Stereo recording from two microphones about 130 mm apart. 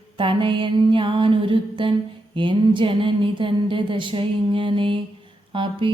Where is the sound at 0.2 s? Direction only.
40° right (ahead or behind).